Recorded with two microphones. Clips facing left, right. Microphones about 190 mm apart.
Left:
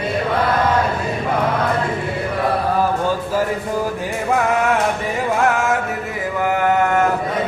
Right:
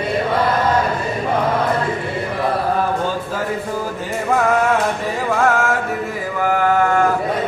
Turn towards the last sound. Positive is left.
turn(degrees=20)  # may be behind; listen again after turning